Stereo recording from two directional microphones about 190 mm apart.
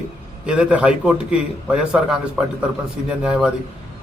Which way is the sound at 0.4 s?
5° right (ahead or behind).